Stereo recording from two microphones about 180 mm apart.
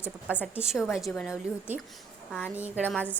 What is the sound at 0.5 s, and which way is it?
Speech, 5° right (ahead or behind).